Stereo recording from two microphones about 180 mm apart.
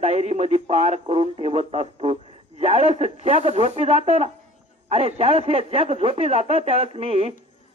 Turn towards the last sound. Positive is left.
turn(degrees=-35)  # may be behind; listen again after turning